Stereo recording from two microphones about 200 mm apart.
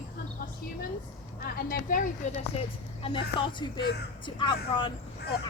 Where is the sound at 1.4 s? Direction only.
50° left (ahead or behind).